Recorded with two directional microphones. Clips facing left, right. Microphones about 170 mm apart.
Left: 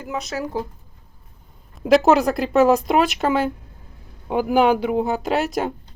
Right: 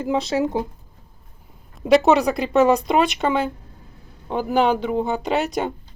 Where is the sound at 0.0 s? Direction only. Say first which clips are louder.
Right 6 dB; 25° right (ahead or behind).